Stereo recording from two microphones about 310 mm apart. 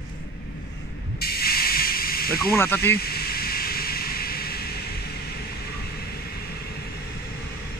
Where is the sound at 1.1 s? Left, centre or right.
Left.